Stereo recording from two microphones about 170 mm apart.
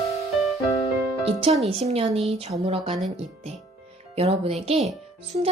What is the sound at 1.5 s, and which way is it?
Speech, 35° right (ahead or behind).